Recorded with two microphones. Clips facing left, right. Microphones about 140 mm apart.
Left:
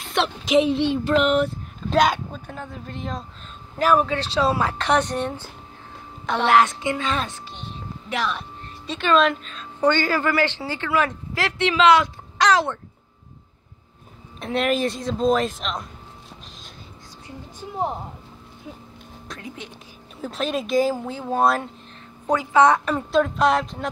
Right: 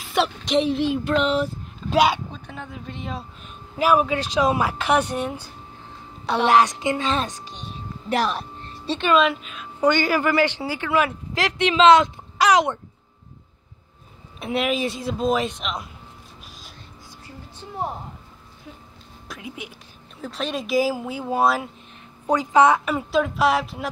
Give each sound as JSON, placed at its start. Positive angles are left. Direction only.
{"t": 0.0, "sound": "a woman's voice", "side_deg": 0}
{"t": 8.1, "sound": "a sound", "side_deg": -40}
{"t": 9.1, "sound": "a woman's voice", "side_deg": -5}
{"t": 12.4, "sound": "a sound", "side_deg": -15}
{"t": 14.4, "sound": "speech", "side_deg": -5}
{"t": 19.2, "sound": "speech", "side_deg": -5}
{"t": 22.2, "sound": "a woman's voice", "side_deg": -15}
{"t": 22.7, "sound": "speech", "side_deg": -5}